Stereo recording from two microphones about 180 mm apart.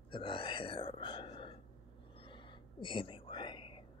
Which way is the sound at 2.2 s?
25° left (ahead or behind).